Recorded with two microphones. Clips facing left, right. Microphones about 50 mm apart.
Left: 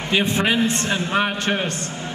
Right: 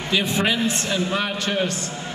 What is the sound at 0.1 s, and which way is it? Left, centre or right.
A man's voice, left.